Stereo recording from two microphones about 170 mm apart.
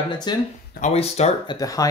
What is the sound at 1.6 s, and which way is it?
Speech, 20° left (ahead or behind).